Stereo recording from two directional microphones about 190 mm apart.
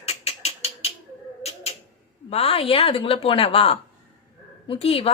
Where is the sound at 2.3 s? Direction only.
30° left (ahead or behind).